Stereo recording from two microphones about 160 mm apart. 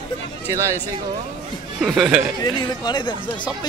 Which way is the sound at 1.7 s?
Centre (ahead or behind).